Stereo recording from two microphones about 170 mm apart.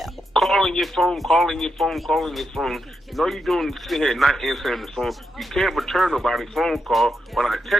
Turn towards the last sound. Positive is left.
turn(degrees=0)  # may be behind; listen again after turning